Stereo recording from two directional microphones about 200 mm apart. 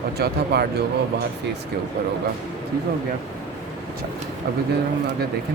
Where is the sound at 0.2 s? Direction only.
55° right (ahead or behind).